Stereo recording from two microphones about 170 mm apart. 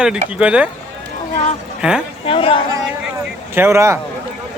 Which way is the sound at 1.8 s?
5° right (ahead or behind).